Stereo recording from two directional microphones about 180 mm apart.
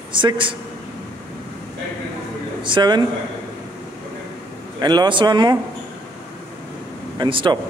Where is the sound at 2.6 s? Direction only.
25° right (ahead or behind).